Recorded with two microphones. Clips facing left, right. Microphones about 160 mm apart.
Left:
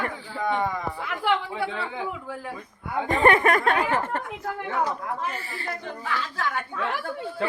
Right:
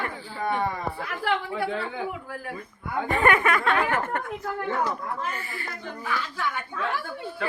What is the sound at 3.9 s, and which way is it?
Speech, 30° left (ahead or behind).